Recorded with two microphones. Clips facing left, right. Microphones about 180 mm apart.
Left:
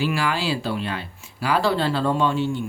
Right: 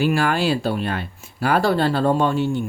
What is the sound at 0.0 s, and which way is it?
Speech, 50° right (ahead or behind).